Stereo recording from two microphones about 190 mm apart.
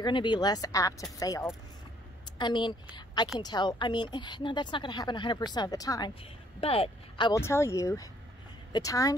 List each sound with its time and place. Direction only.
0.0 s a woman's voice: 25° left (ahead or behind)
6.6 s speech: 30° left (ahead or behind)
7.3 s speech: 15° left (ahead or behind)